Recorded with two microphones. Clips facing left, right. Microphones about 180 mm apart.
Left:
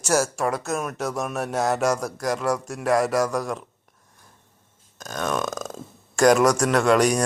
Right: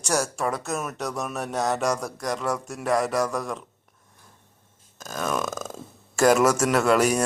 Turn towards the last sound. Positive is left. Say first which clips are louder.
# left 2 dB
turn(degrees=-5)  # may be behind; listen again after turning